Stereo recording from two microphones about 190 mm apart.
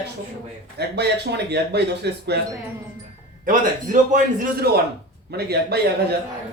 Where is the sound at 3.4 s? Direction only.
45° right (ahead or behind).